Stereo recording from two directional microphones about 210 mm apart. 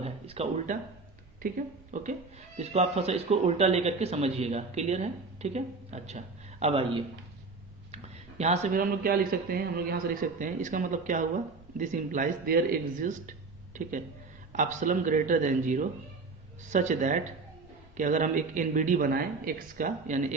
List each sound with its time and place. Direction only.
0.0 s a man's voice: 30° right (ahead or behind)